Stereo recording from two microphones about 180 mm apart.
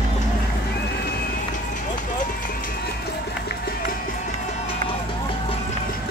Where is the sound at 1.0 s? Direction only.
60° left (ahead or behind).